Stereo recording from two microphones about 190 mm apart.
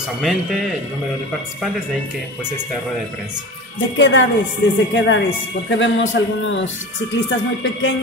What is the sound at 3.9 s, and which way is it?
Speech, 75° left (ahead or behind).